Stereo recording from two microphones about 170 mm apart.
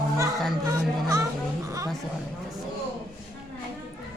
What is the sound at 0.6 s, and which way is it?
Chatter, 20° right (ahead or behind).